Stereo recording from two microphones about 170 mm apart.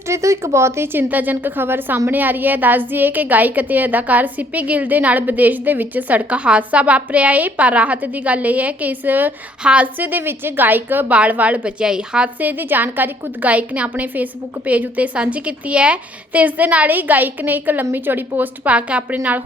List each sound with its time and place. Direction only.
0.1 s a woman's voice: 15° right (ahead or behind)